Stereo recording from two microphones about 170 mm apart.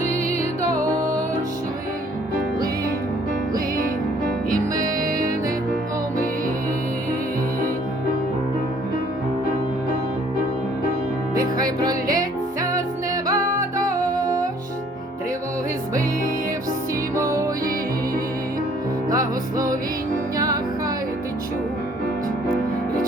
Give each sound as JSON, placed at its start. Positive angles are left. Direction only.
{"t": 0.0, "sound": "music", "side_deg": 40}
{"t": 0.6, "sound": "music", "side_deg": -20}
{"t": 3.5, "sound": "music", "side_deg": -55}
{"t": 4.9, "sound": "music", "side_deg": -55}
{"t": 11.3, "sound": "music", "side_deg": -20}
{"t": 13.2, "sound": "music", "side_deg": -20}
{"t": 17.2, "sound": "music", "side_deg": -20}
{"t": 19.1, "sound": "music", "side_deg": -20}